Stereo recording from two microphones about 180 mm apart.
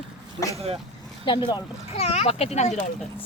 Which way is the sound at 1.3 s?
25° left (ahead or behind).